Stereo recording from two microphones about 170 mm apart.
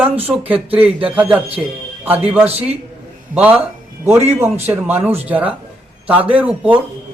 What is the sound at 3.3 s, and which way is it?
Speech, 10° right (ahead or behind).